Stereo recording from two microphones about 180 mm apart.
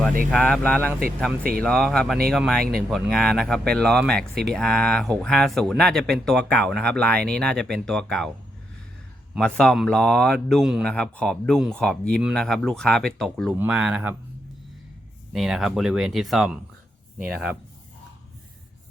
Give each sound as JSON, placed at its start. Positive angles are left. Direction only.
{"t": 0.3, "sound": "speech", "side_deg": 5}
{"t": 9.4, "sound": "speech", "side_deg": 5}
{"t": 15.3, "sound": "speech", "side_deg": 0}